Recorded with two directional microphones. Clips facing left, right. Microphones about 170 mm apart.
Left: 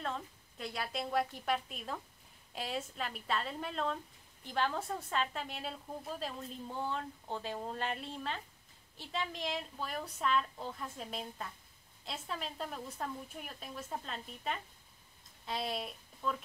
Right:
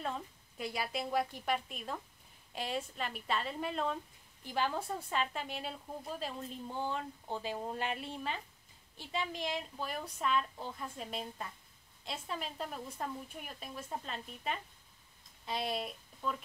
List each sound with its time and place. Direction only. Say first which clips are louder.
0.0 s a woman's voice: even; 5° right (ahead or behind)